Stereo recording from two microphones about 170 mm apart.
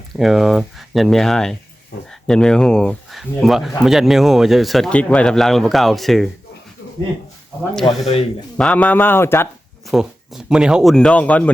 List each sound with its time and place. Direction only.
0.2 s speech: centre (ahead or behind)
7.9 s speech: 35° left (ahead or behind)
8.5 s speech: 5° left (ahead or behind)
9.9 s speech: 5° right (ahead or behind)